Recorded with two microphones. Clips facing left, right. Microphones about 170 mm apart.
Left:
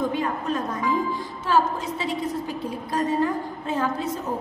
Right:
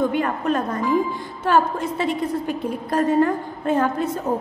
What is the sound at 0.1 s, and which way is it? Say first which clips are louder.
Music: right 4 dB; 65° right (ahead or behind).